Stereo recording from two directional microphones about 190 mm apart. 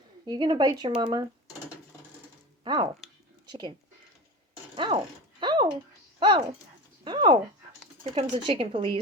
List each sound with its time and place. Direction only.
0.3 s speech: 25° right (ahead or behind)
2.6 s speech: 25° right (ahead or behind)
5.4 s a sound: 25° right (ahead or behind)
6.1 s speech: 25° right (ahead or behind)
7.0 s a sound: 25° right (ahead or behind)
8.0 s speech: 25° right (ahead or behind)